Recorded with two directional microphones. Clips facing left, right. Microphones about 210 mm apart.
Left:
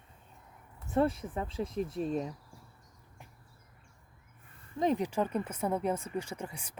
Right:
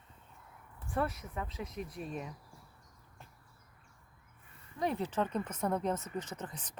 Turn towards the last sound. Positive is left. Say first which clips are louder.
# left 3 dB
turn(degrees=10)  # may be behind; listen again after turning